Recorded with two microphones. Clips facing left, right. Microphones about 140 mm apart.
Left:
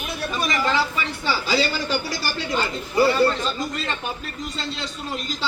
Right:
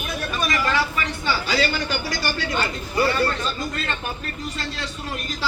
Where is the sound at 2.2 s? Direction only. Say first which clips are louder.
Even; 5° left (ahead or behind).